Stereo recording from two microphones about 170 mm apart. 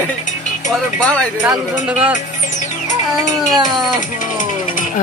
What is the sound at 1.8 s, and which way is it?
Speech, 10° right (ahead or behind).